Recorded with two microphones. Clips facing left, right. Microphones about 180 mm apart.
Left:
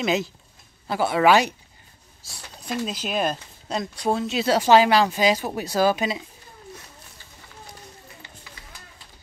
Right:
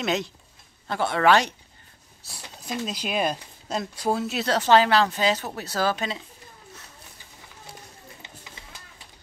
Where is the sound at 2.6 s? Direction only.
Centre (ahead or behind).